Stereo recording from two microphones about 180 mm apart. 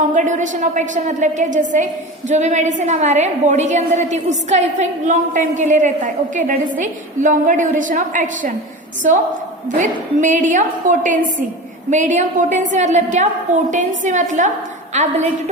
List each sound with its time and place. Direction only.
0.0 s a woman's voice: 45° right (ahead or behind)